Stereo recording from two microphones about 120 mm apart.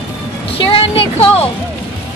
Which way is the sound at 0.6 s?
50° left (ahead or behind).